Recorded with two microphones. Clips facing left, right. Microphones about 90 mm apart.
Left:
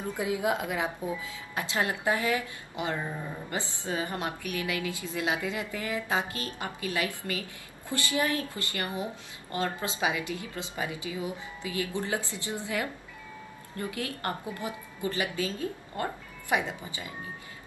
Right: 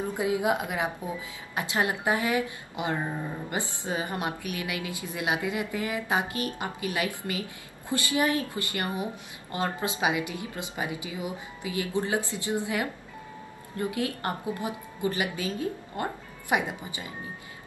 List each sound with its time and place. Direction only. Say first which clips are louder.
0.1 s a woman's voice: right 1 dB; 20° right (ahead or behind)